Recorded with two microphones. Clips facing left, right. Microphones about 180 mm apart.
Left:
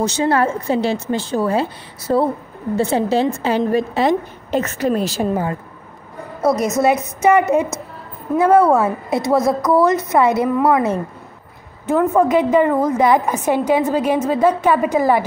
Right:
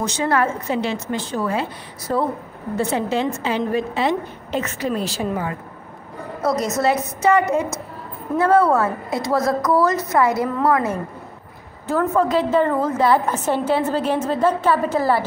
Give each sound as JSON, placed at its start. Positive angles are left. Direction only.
{"t": 0.0, "sound": "a woman's voice", "side_deg": 30}
{"t": 5.3, "sound": "a woman's voice", "side_deg": 35}
{"t": 6.4, "sound": "a woman's voice", "side_deg": 20}